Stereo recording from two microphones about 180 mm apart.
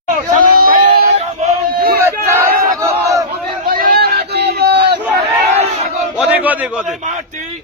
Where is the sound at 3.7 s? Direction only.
55° right (ahead or behind).